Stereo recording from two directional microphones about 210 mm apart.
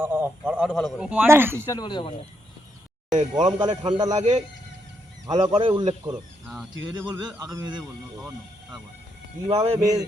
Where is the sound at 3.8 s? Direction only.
20° right (ahead or behind).